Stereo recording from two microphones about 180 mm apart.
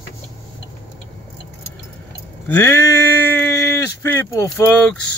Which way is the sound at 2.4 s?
10° left (ahead or behind).